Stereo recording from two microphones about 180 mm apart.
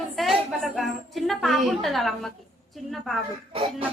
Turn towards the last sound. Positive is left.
turn(degrees=-30)  # may be behind; listen again after turning